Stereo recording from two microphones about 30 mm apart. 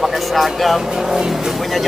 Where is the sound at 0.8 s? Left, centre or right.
Centre.